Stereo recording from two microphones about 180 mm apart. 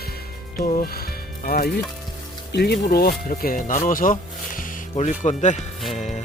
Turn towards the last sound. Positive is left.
turn(degrees=40)  # may be behind; listen again after turning